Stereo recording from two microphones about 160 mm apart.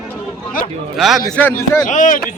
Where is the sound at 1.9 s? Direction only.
55° left (ahead or behind).